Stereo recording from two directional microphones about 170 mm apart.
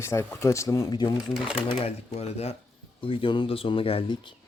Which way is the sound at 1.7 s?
35° left (ahead or behind).